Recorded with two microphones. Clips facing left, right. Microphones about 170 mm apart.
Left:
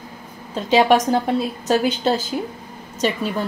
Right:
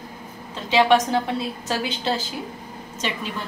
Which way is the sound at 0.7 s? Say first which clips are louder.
Left 3 dB; 40° left (ahead or behind).